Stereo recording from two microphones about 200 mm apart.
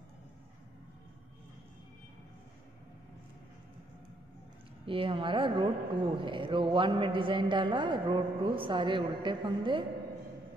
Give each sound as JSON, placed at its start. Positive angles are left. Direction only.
{"t": 4.8, "sound": "a woman's voice", "side_deg": -25}